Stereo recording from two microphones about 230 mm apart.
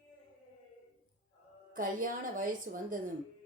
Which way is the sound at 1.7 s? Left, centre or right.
Right.